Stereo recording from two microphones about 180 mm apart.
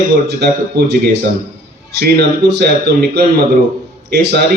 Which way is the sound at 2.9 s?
65° right (ahead or behind).